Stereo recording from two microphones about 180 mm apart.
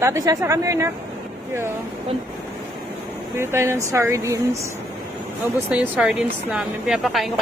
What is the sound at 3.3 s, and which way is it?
Speech, 15° right (ahead or behind).